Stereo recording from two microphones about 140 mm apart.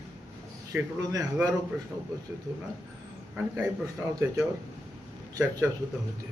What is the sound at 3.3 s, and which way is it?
A man's voice, 20° right (ahead or behind).